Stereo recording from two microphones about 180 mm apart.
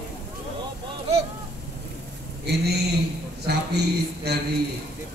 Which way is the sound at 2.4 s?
65° right (ahead or behind).